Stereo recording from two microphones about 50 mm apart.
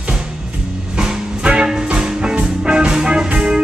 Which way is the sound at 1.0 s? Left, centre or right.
Centre.